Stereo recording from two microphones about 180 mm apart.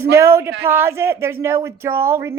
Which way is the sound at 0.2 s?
15° right (ahead or behind).